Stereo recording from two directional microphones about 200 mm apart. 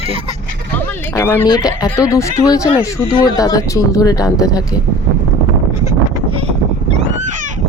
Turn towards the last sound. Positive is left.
turn(degrees=-35)  # may be behind; listen again after turning